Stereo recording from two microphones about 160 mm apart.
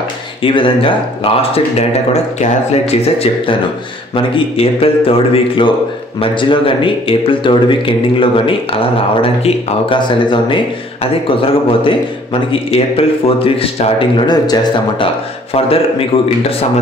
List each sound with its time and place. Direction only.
0.4 s speech: 30° left (ahead or behind)
4.6 s speech: 35° left (ahead or behind)
15.5 s speech: 35° left (ahead or behind)